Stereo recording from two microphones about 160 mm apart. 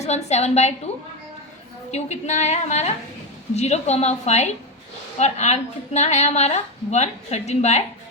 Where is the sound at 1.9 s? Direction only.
45° left (ahead or behind).